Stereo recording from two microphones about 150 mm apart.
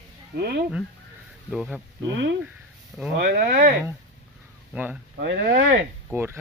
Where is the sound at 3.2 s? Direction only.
90° right.